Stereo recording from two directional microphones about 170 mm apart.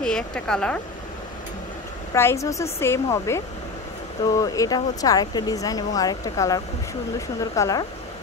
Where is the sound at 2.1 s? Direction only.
15° left (ahead or behind).